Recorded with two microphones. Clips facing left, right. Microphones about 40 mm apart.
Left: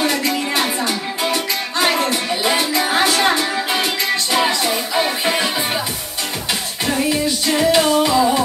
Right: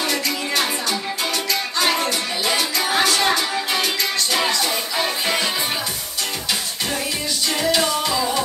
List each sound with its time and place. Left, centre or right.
0.0 s music: centre
7.5 s music: left